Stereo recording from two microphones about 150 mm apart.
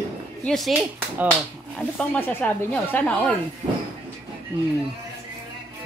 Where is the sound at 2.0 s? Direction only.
10° left (ahead or behind).